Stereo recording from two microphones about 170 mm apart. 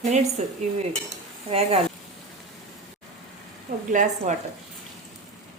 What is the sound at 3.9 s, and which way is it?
Speech, 45° right (ahead or behind).